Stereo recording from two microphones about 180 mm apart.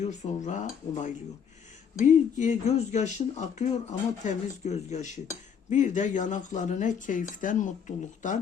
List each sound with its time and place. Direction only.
0.0 s speech: 40° left (ahead or behind)